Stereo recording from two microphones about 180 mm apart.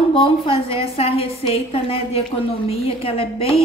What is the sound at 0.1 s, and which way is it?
A woman's voice, 30° left (ahead or behind).